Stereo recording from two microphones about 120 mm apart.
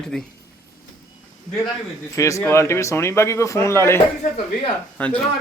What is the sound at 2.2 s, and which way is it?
Speech, 25° left (ahead or behind).